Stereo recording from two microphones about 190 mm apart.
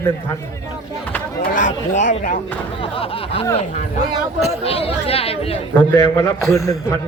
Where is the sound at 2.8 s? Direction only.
30° left (ahead or behind).